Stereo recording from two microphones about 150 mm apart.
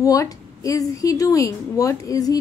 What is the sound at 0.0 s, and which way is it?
A woman's voice, 20° left (ahead or behind).